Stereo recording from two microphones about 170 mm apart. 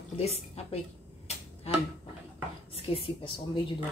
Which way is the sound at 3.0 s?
30° left (ahead or behind).